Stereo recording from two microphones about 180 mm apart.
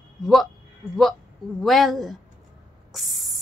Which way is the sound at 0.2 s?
Centre (ahead or behind).